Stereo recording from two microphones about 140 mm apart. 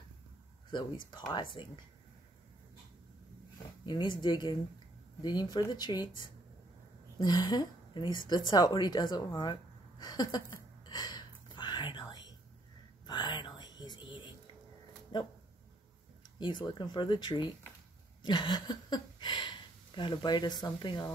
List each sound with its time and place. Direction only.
0.7 s speech: 35° left (ahead or behind)
3.8 s speech: 30° left (ahead or behind)
7.2 s speech: 30° left (ahead or behind)
10.9 s whispering: 30° left (ahead or behind)
15.1 s speech: 35° left (ahead or behind)
16.3 s speech: 35° left (ahead or behind)